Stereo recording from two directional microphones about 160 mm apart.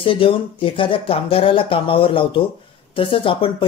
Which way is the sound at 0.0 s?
35° left (ahead or behind).